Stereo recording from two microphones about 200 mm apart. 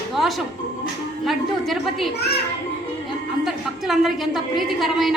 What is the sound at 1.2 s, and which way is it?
Speech, centre (ahead or behind).